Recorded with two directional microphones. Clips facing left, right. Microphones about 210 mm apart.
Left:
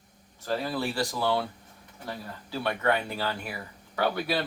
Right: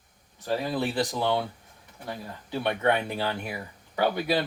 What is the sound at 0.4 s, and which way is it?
Speech, 15° right (ahead or behind).